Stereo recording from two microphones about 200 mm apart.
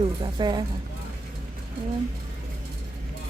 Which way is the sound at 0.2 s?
20° right (ahead or behind).